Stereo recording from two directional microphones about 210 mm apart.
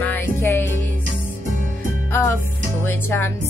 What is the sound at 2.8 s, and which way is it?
Music, 10° left (ahead or behind).